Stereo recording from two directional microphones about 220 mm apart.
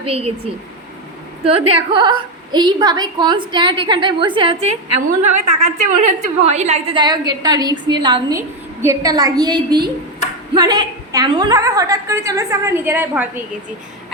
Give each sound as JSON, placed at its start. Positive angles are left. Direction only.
{"t": 0.0, "sound": "a woman's voice", "side_deg": -25}
{"t": 1.5, "sound": "a woman's voice", "side_deg": -25}